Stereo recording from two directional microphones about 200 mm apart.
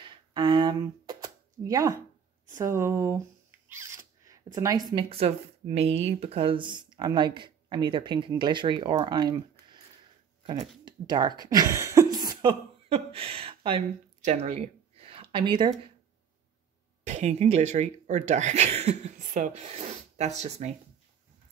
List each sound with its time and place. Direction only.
0.0 s a sound: 25° right (ahead or behind)
2.5 s speech: 15° right (ahead or behind)
10.4 s speech: 25° right (ahead or behind)
17.0 s speech: 35° right (ahead or behind)